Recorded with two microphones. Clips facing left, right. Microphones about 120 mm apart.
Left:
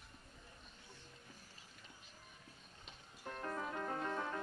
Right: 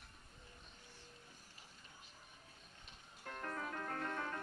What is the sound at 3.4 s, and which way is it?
Music, 15° left (ahead or behind).